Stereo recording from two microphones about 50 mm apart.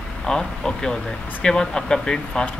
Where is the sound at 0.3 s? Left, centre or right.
Centre.